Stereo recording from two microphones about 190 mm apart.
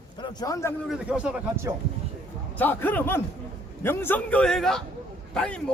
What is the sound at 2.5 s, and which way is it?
A man's voice, 10° left (ahead or behind).